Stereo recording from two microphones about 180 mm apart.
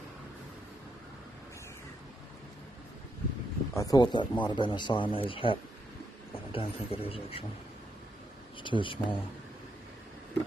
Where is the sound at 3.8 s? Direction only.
20° left (ahead or behind).